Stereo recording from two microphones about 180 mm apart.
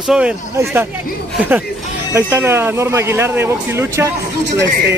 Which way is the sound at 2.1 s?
15° right (ahead or behind).